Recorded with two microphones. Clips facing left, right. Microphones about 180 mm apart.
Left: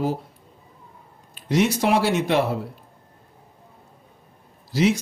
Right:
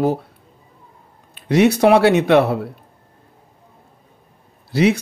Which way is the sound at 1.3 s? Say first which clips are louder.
Right 6 dB; 65° right (ahead or behind).